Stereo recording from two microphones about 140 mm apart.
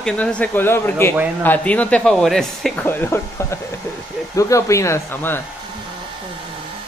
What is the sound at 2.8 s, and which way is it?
Speech, 15° left (ahead or behind).